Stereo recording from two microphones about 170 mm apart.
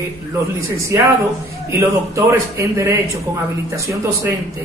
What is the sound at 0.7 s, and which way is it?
Speech, 15° right (ahead or behind).